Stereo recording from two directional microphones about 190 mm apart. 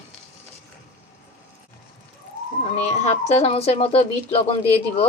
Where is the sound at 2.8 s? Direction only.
35° left (ahead or behind).